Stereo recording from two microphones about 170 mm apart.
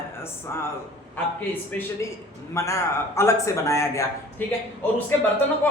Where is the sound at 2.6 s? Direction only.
15° left (ahead or behind).